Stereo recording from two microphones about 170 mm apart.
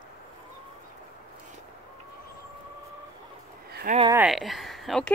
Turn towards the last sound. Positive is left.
turn(degrees=0)  # may be behind; listen again after turning